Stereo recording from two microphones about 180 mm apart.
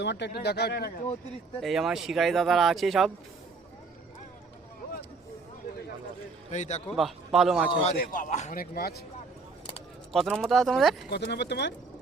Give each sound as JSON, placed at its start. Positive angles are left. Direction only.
{"t": 0.0, "sound": "speech", "side_deg": 75}
{"t": 1.6, "sound": "speech", "side_deg": 0}
{"t": 6.5, "sound": "a man's voice", "side_deg": 40}
{"t": 6.8, "sound": "speech", "side_deg": 0}
{"t": 7.9, "sound": "a man's voice", "side_deg": 50}
{"t": 10.1, "sound": "speech", "side_deg": 0}
{"t": 11.0, "sound": "speech", "side_deg": 70}